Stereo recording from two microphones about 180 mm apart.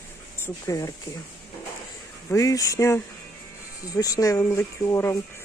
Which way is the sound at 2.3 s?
20° left (ahead or behind).